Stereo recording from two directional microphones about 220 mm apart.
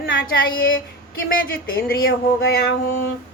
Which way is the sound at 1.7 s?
45° left (ahead or behind).